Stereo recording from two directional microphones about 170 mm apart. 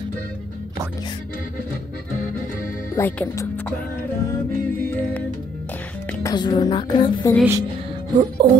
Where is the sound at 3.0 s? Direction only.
15° left (ahead or behind).